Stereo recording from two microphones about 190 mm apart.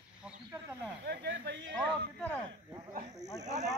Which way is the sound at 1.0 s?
60° right (ahead or behind).